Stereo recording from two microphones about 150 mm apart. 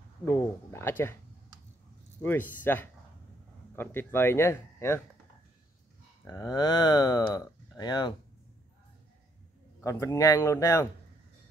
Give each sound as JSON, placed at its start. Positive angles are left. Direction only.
{"t": 0.2, "sound": "speech", "side_deg": 15}
{"t": 2.2, "sound": "speech", "side_deg": 10}
{"t": 6.2, "sound": "speech", "side_deg": 25}
{"t": 9.8, "sound": "speech", "side_deg": 20}